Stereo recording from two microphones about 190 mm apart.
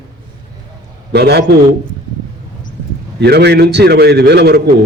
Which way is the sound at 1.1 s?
60° right (ahead or behind).